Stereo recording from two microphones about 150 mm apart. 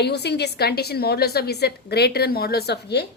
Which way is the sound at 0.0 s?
90° left.